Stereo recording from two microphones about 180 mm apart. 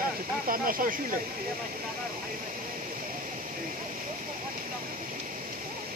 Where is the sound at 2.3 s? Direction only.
50° right (ahead or behind).